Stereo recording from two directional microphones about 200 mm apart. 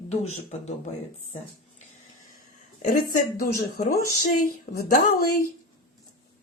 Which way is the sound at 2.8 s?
40° left (ahead or behind).